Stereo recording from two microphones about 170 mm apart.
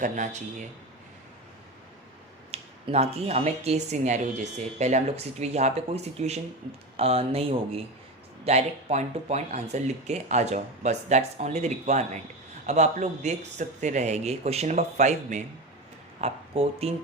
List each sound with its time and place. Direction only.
2.5 s a man's voice: 35° right (ahead or behind)